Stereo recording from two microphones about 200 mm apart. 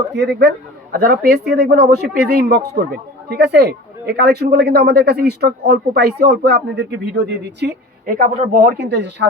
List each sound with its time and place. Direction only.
0.2 s speech: 55° right (ahead or behind)
8.1 s speech: 45° right (ahead or behind)